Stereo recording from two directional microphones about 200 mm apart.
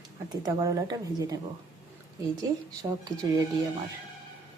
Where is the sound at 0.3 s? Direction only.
15° right (ahead or behind).